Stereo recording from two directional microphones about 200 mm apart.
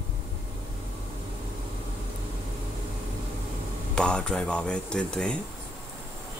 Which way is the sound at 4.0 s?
5° left (ahead or behind).